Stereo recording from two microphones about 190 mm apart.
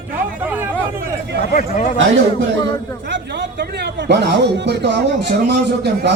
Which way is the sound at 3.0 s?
65° right (ahead or behind).